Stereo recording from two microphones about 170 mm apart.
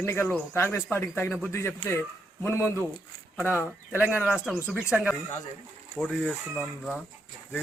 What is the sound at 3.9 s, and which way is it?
Speech, 10° right (ahead or behind).